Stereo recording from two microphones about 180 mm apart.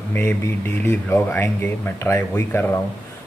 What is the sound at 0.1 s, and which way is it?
Speech, 10° left (ahead or behind).